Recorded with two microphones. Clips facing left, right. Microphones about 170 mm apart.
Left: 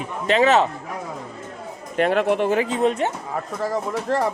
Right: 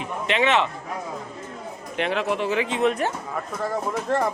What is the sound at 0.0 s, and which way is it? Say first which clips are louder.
Speech: left 4 dB; 40° left (ahead or behind).